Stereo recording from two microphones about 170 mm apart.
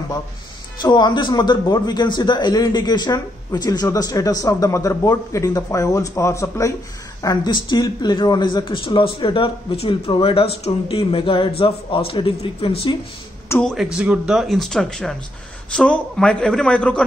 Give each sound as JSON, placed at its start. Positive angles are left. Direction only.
{"t": 0.7, "sound": "a man's voice", "side_deg": 25}
{"t": 13.6, "sound": "speech", "side_deg": 0}